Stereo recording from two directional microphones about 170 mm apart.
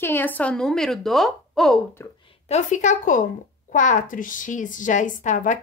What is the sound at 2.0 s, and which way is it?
Speech, 15° left (ahead or behind).